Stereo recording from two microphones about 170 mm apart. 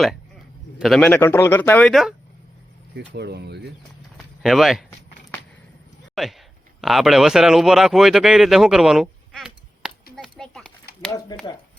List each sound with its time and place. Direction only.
0.8 s speech: centre (ahead or behind)
2.9 s speech: 75° right (ahead or behind)
4.2 s a sound: centre (ahead or behind)
6.2 s speech: centre (ahead or behind)
10.2 s a sound: 5° left (ahead or behind)
11.3 s speech: 20° left (ahead or behind)